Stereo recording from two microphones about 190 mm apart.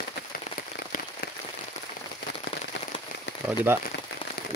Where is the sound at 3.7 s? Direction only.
10° right (ahead or behind).